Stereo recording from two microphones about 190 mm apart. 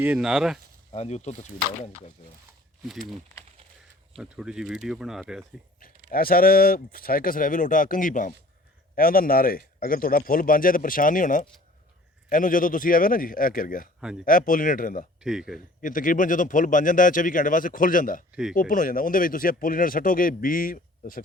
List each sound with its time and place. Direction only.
0.0 s speech: 5° right (ahead or behind)
0.9 s speech: 35° left (ahead or behind)
4.2 s speech: 5° right (ahead or behind)
6.1 s speech: 50° left (ahead or behind)
15.2 s speech: centre (ahead or behind)
15.8 s speech: 45° left (ahead or behind)
18.3 s speech: centre (ahead or behind)
18.5 s speech: 45° left (ahead or behind)